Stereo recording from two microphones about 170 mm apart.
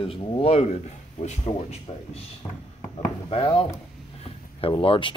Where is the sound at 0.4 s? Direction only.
35° left (ahead or behind).